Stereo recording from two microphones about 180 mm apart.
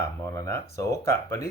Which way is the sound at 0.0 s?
15° left (ahead or behind).